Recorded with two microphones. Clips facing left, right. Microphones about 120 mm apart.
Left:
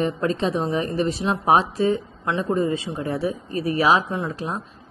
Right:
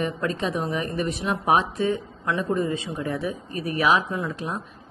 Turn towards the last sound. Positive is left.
turn(degrees=30)  # may be behind; listen again after turning